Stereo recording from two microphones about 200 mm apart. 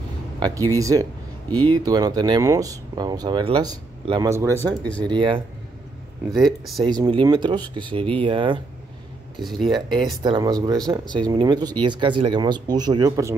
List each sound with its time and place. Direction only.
0.4 s speech: 15° right (ahead or behind)
6.8 s speech: 25° right (ahead or behind)
9.6 s speech: 20° right (ahead or behind)